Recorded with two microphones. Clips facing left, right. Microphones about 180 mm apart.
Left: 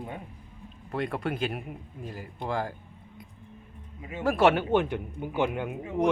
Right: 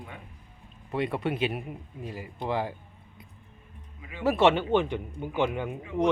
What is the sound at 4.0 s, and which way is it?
Speech, 40° left (ahead or behind).